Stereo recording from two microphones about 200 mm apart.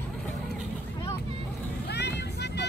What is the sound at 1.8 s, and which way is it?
Vehicle, 55° left (ahead or behind).